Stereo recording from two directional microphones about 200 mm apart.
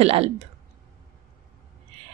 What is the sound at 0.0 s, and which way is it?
Speech, 30° right (ahead or behind).